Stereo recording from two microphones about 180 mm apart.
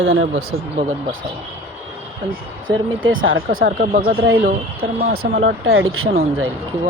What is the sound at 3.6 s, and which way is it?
Speech, 50° right (ahead or behind).